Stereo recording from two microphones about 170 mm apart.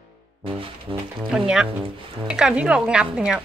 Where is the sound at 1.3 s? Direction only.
5° right (ahead or behind).